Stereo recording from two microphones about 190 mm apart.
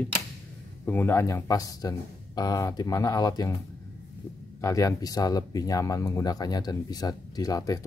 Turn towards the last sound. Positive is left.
turn(degrees=20)  # may be behind; listen again after turning